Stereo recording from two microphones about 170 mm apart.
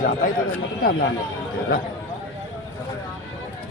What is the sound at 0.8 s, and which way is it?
Speech, 60° left (ahead or behind).